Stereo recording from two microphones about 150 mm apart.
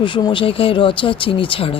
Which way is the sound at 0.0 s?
35° left (ahead or behind).